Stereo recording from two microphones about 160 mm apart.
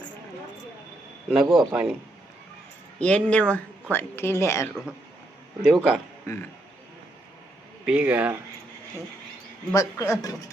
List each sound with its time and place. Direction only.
1.3 s a man's voice: centre (ahead or behind)
3.0 s speech: 10° left (ahead or behind)
5.6 s a man's voice: centre (ahead or behind)
6.2 s speech: 15° left (ahead or behind)
7.9 s speech: 10° right (ahead or behind)
9.7 s speech: 20° left (ahead or behind)